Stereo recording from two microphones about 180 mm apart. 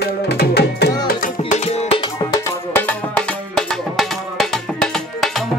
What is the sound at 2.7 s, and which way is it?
Music, 5° left (ahead or behind).